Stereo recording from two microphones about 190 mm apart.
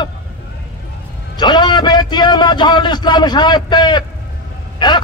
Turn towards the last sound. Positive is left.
turn(degrees=25)  # may be behind; listen again after turning